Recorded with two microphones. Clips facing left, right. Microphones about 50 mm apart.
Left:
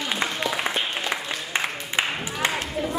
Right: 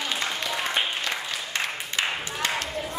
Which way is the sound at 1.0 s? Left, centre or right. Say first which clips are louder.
Left 2 dB; centre.